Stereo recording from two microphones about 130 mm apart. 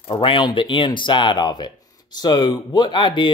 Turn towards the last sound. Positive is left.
turn(degrees=35)  # may be behind; listen again after turning